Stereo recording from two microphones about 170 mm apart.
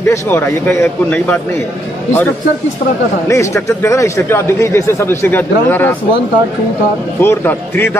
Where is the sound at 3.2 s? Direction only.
15° left (ahead or behind).